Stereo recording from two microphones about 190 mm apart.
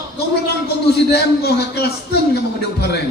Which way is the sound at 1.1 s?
60° left (ahead or behind).